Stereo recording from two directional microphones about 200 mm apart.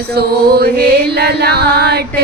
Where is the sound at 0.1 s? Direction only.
50° right (ahead or behind).